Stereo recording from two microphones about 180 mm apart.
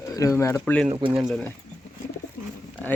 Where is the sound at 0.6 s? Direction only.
5° left (ahead or behind).